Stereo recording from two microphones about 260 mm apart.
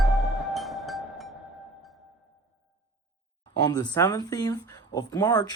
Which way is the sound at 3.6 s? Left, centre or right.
Centre.